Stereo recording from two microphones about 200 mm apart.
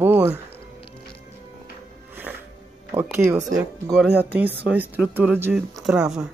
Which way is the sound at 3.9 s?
5° right (ahead or behind).